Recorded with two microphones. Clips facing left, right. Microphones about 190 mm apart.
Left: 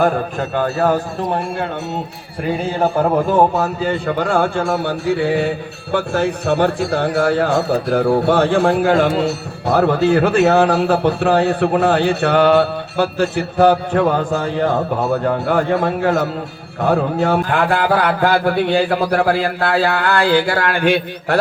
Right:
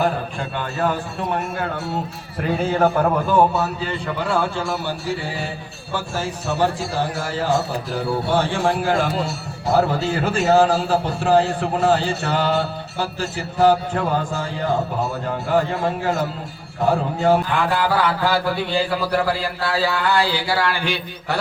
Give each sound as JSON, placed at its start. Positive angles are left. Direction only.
{"t": 0.0, "sound": "a man's voice", "side_deg": 45}
{"t": 3.6, "sound": "a man's voice", "side_deg": 50}